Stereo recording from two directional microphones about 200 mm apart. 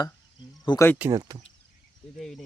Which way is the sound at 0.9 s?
10° right (ahead or behind).